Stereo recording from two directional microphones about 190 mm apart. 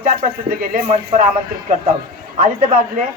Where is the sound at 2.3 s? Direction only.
45° right (ahead or behind).